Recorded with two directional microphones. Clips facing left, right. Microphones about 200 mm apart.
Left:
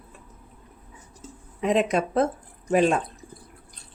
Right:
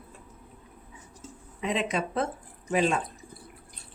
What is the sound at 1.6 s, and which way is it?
A woman's voice, 45° left (ahead or behind).